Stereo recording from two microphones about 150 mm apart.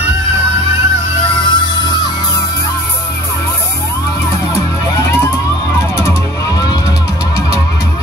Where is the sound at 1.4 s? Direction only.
25° left (ahead or behind).